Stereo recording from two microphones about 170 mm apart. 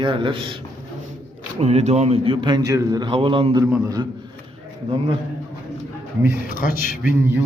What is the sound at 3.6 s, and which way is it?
Speech, 15° right (ahead or behind).